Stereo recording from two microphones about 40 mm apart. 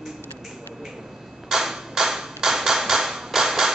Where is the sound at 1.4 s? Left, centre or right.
Centre.